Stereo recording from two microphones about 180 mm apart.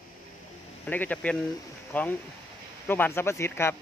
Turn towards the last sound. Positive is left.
turn(degrees=15)  # may be behind; listen again after turning